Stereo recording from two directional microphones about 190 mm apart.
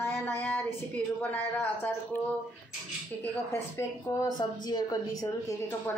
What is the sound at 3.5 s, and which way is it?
A woman's voice, 15° left (ahead or behind).